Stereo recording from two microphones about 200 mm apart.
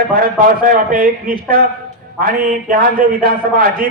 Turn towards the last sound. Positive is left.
turn(degrees=-45)  # may be behind; listen again after turning